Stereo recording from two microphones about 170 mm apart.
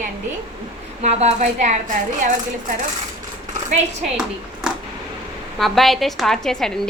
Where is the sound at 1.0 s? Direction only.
45° right (ahead or behind).